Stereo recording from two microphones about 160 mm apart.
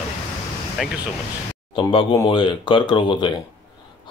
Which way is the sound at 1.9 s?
30° left (ahead or behind).